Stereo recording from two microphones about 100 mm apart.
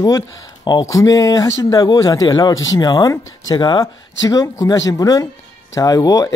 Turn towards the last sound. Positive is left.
turn(degrees=35)  # may be behind; listen again after turning